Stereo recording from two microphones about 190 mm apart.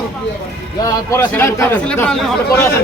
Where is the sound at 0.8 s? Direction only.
15° left (ahead or behind).